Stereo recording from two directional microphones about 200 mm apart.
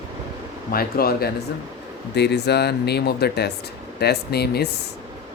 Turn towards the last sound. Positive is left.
turn(degrees=50)  # may be behind; listen again after turning